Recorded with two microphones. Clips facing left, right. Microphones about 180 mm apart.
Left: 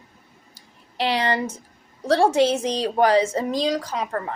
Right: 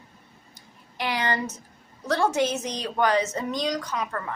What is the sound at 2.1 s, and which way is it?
A woman's voice, 30° left (ahead or behind).